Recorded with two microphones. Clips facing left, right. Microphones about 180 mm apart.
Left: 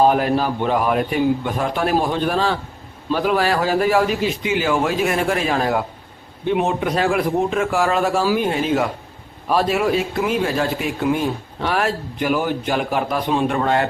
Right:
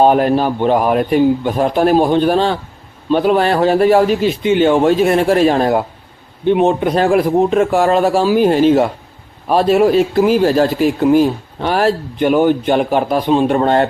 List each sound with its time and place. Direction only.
0.0 s a man's voice: 30° right (ahead or behind)